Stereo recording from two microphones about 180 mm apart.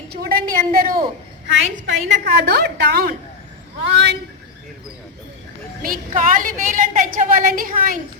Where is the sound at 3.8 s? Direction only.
75° right (ahead or behind).